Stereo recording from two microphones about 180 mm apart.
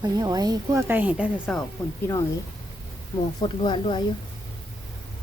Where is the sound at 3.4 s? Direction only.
30° left (ahead or behind).